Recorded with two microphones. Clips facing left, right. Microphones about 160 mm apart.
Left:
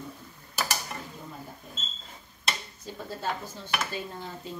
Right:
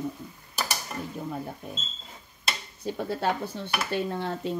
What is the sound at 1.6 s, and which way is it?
Speech, 70° right (ahead or behind).